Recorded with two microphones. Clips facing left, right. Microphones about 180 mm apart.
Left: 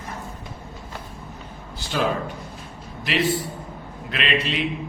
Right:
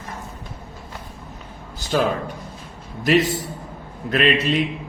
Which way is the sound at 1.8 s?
45° right (ahead or behind).